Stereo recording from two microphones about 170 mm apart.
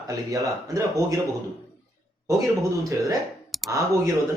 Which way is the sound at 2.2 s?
20° right (ahead or behind).